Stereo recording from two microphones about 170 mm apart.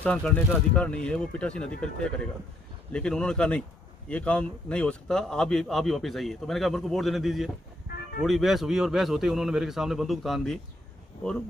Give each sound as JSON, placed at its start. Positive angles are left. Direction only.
{"t": 0.0, "sound": "a man's voice", "side_deg": 5}